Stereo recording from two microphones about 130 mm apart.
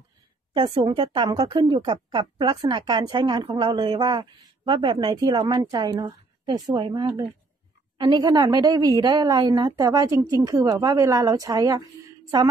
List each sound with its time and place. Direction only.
0.6 s a woman's voice: 40° right (ahead or behind)
8.0 s a woman's voice: 35° right (ahead or behind)